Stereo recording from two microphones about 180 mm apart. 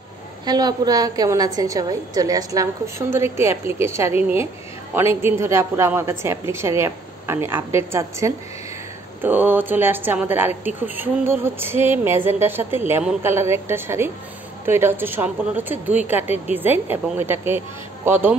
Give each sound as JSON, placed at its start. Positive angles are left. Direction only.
{"t": 0.5, "sound": "a woman's voice", "side_deg": -20}